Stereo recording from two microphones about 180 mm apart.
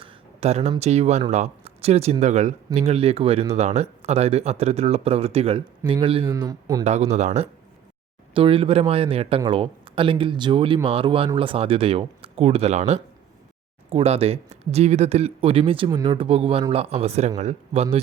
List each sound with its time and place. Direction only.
0.0 s speech: 35° right (ahead or behind)
6.8 s speech: 40° right (ahead or behind)